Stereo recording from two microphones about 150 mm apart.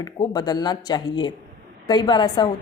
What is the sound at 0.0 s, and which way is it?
A woman's voice, 30° left (ahead or behind).